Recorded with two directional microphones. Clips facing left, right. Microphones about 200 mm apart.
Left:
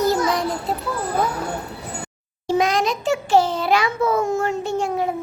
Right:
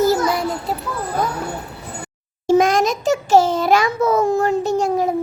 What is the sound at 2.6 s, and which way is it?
A child's voice, 45° right (ahead or behind).